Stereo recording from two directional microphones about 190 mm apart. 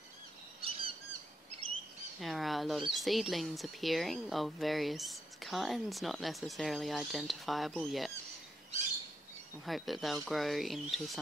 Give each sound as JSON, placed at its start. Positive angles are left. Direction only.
{"t": 0.6, "sound": "a sound", "side_deg": -30}
{"t": 2.1, "sound": "speech", "side_deg": 0}
{"t": 9.7, "sound": "speech", "side_deg": 0}